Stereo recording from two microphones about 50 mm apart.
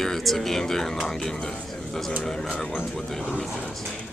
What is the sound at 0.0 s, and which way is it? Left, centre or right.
Speech, centre.